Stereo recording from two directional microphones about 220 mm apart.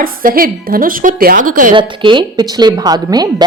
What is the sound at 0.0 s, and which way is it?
A woman's voice, 40° right (ahead or behind).